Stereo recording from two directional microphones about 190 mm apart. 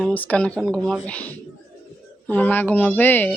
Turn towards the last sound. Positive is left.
turn(degrees=10)  # may be behind; listen again after turning